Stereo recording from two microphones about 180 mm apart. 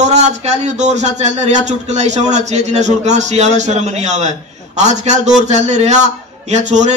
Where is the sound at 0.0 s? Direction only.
40° right (ahead or behind).